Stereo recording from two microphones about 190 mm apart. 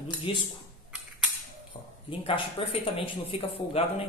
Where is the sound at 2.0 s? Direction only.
25° left (ahead or behind).